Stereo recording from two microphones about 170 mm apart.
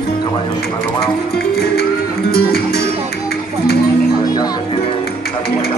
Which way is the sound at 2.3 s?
65° left (ahead or behind).